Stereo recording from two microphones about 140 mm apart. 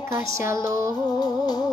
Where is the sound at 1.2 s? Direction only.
30° left (ahead or behind).